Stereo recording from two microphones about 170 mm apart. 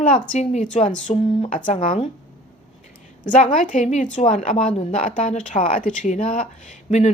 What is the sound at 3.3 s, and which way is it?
A woman's voice, 50° left (ahead or behind).